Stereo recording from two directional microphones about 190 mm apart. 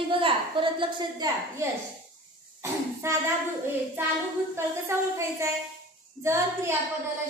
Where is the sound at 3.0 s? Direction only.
15° right (ahead or behind).